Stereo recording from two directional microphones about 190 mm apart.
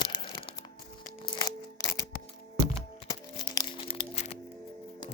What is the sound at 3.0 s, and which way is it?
Music, 15° left (ahead or behind).